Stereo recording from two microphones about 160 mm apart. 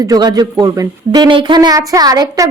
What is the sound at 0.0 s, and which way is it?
A woman's voice, 25° right (ahead or behind).